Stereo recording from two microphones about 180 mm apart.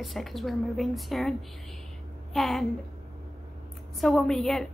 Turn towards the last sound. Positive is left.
turn(degrees=0)  # may be behind; listen again after turning